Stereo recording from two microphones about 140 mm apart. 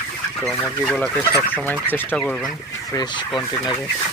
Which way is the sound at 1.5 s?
15° left (ahead or behind).